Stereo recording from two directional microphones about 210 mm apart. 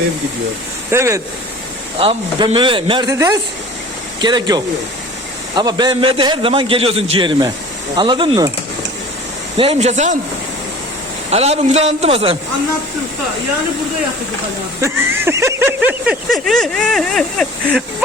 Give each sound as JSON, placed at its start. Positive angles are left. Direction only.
{"t": 0.9, "sound": "speech", "side_deg": -15}
{"t": 2.0, "sound": "a man's voice", "side_deg": -25}
{"t": 9.6, "sound": "speech", "side_deg": -30}
{"t": 11.3, "sound": "a man's voice", "side_deg": -30}
{"t": 14.8, "sound": "speech", "side_deg": -10}